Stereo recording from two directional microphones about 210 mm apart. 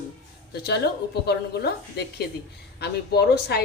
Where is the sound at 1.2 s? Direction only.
50° left (ahead or behind).